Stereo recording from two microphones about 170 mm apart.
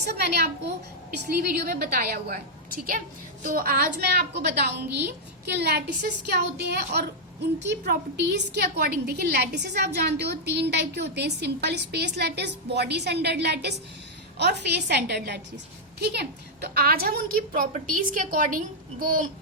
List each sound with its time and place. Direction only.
0.1 s a woman's voice: 75° right (ahead or behind)
3.4 s a woman's voice: 55° right (ahead or behind)
4.4 s a woman's voice: 80° right
6.0 s a woman's voice: 50° right (ahead or behind)
6.6 s a woman's voice: 75° right (ahead or behind); by 19.2 s 55° right (ahead or behind)